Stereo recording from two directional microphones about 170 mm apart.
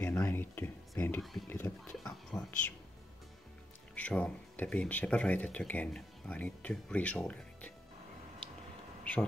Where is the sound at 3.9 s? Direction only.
10° left (ahead or behind).